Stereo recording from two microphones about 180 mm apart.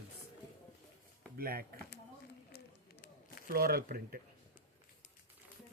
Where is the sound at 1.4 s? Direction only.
55° right (ahead or behind).